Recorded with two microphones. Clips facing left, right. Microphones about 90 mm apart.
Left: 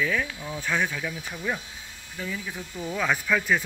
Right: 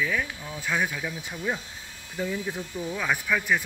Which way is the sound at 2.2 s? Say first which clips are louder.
Right 4 dB; 40° right (ahead or behind).